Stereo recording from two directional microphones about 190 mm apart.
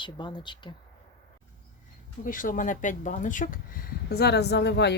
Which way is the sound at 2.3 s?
45° left (ahead or behind).